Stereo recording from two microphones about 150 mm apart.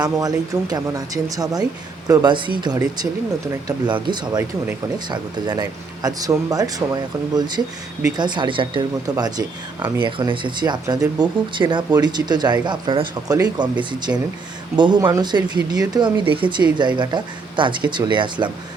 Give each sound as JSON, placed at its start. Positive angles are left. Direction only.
{"t": 0.0, "sound": "speech", "side_deg": -25}